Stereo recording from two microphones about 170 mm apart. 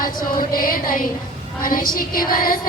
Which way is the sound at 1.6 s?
55° left (ahead or behind).